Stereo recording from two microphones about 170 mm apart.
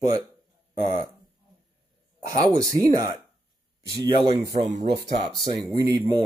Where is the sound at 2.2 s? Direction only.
20° right (ahead or behind).